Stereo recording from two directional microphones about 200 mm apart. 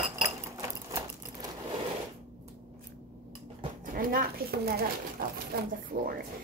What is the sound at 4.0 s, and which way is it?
A woman's voice, 45° right (ahead or behind).